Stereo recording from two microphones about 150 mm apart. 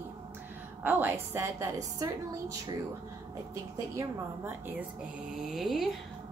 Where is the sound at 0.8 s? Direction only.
10° right (ahead or behind).